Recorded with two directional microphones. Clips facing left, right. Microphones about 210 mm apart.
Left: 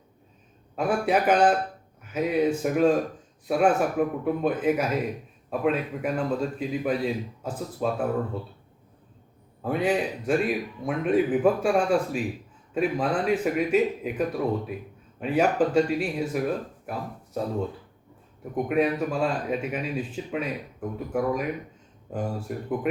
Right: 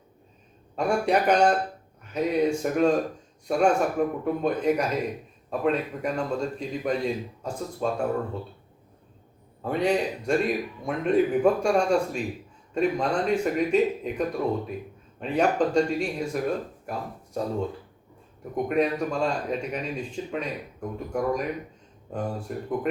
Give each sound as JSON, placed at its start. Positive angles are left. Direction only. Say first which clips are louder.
{"t": 0.8, "sound": "a man's voice", "louder": "even", "side_deg": 5}
{"t": 9.6, "sound": "a man's voice", "louder": "even", "side_deg": 5}
{"t": 18.5, "sound": "a man's voice", "louder": "even", "side_deg": 5}